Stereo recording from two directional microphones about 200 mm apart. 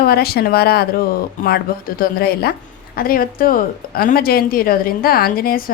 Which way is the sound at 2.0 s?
50° left (ahead or behind).